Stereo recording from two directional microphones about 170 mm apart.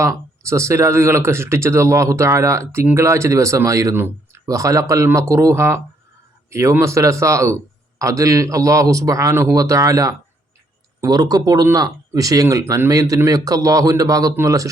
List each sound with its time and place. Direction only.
0.4 s speech: 15° right (ahead or behind)